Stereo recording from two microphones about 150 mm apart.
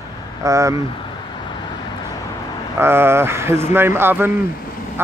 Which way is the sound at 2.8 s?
15° right (ahead or behind).